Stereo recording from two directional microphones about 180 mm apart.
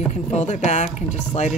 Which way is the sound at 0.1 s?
40° left (ahead or behind).